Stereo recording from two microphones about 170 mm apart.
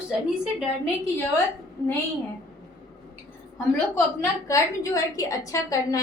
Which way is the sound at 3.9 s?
15° left (ahead or behind).